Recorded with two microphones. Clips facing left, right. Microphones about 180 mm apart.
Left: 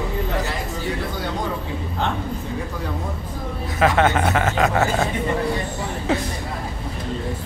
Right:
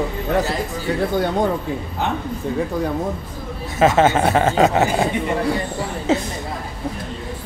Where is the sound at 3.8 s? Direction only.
25° right (ahead or behind).